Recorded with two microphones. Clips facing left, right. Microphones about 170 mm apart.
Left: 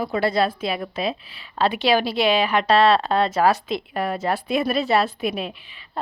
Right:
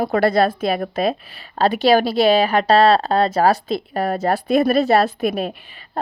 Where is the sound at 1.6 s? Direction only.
40° right (ahead or behind).